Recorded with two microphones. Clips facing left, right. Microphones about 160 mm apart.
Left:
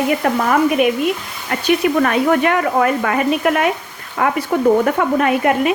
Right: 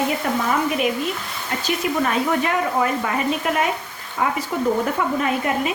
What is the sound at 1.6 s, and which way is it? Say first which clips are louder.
Speech: left 7 dB; 65° left (ahead or behind).